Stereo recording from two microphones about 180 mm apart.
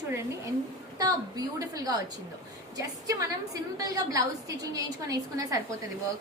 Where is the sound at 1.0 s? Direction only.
20° right (ahead or behind).